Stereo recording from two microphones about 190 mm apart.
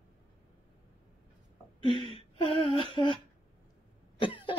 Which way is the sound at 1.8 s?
25° left (ahead or behind).